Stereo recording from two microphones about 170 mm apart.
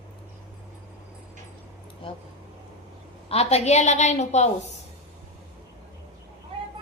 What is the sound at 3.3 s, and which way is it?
A woman's voice, 40° left (ahead or behind).